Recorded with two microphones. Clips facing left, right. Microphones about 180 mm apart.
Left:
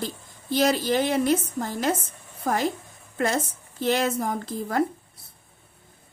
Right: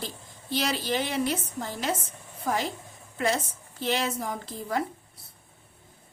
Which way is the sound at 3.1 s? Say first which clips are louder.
Left 2 dB; 50° left (ahead or behind).